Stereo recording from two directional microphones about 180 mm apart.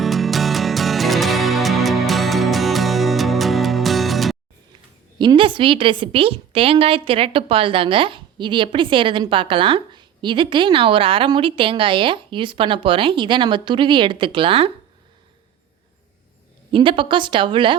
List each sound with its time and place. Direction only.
0.0 s music: centre (ahead or behind)
5.2 s a woman's voice: 25° right (ahead or behind)
16.7 s a woman's voice: 30° right (ahead or behind)